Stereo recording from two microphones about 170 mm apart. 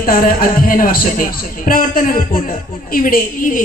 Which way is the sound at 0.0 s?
55° left (ahead or behind).